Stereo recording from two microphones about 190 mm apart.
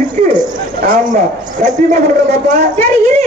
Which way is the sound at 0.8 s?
50° right (ahead or behind).